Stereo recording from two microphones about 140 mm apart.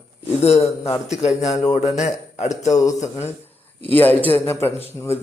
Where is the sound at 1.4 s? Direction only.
55° left (ahead or behind).